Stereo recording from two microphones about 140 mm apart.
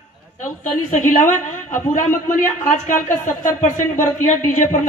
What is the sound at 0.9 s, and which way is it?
A woman's voice, 65° left (ahead or behind).